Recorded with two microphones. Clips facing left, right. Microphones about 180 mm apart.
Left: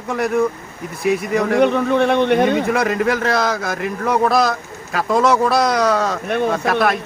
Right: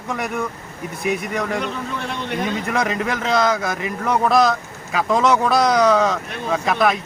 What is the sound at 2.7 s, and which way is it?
A man's voice, centre (ahead or behind).